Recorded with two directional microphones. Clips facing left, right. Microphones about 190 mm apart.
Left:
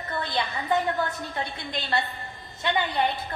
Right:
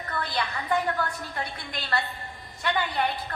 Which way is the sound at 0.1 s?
20° left (ahead or behind).